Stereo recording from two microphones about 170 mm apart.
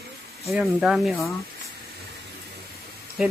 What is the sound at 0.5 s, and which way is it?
Speech, centre (ahead or behind).